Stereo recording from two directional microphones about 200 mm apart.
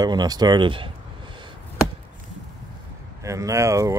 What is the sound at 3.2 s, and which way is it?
Speech, 15° right (ahead or behind).